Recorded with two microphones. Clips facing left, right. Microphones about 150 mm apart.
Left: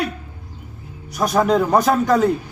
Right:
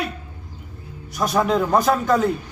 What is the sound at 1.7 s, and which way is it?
Speech, centre (ahead or behind).